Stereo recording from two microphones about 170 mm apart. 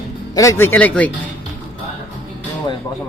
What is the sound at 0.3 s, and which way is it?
Speech, 15° left (ahead or behind).